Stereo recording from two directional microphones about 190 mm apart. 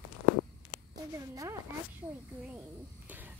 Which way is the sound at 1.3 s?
15° right (ahead or behind).